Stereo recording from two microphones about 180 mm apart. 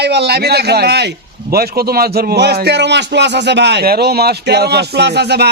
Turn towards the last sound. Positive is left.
turn(degrees=-65)  # may be behind; listen again after turning